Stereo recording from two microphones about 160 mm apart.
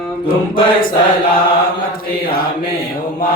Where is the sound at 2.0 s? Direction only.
65° left (ahead or behind).